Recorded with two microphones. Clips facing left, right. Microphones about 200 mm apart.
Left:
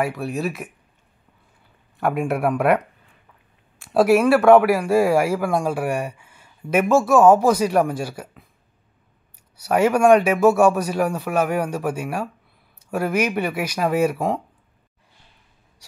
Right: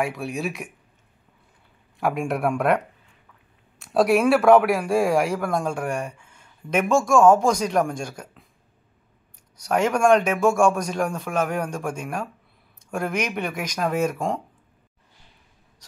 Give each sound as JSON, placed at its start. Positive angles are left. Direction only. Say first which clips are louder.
{"t": 0.0, "sound": "speech", "louder": "left 3 dB", "side_deg": 0}
{"t": 2.0, "sound": "speech", "louder": "left 2 dB", "side_deg": 0}
{"t": 3.8, "sound": "speech", "louder": "left 3 dB", "side_deg": 0}
{"t": 9.6, "sound": "a man's voice", "louder": "left 3 dB", "side_deg": 5}